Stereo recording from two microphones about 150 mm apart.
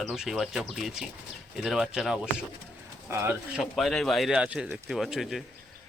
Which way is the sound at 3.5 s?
Centre (ahead or behind).